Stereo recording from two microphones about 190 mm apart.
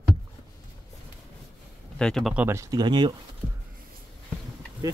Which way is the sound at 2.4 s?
15° right (ahead or behind).